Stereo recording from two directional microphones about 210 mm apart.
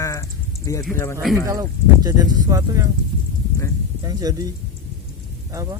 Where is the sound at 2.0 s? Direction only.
20° right (ahead or behind).